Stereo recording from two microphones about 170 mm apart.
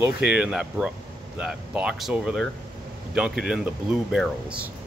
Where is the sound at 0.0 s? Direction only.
5° right (ahead or behind).